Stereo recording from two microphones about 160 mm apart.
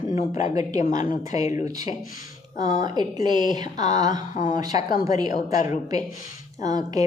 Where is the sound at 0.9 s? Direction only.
50° left (ahead or behind).